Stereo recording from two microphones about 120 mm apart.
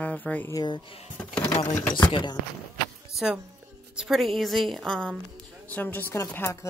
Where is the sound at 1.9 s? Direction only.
40° left (ahead or behind).